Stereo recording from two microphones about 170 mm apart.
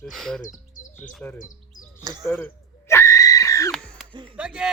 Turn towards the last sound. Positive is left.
turn(degrees=-5)  # may be behind; listen again after turning